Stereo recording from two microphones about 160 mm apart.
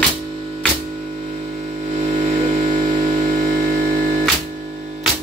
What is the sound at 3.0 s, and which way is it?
Music, 55° right (ahead or behind).